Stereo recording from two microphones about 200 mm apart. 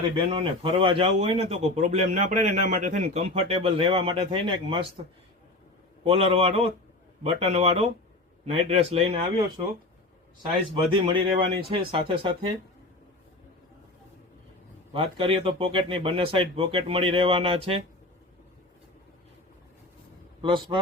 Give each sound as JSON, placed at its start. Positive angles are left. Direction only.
{"t": 0.2, "sound": "a man's voice", "side_deg": -25}
{"t": 6.1, "sound": "a man's voice", "side_deg": -30}
{"t": 11.0, "sound": "a man's voice", "side_deg": -25}
{"t": 14.9, "sound": "a man's voice", "side_deg": -30}
{"t": 20.4, "sound": "a man's voice", "side_deg": -25}